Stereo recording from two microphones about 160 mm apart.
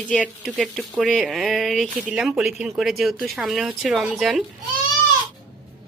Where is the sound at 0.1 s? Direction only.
5° left (ahead or behind).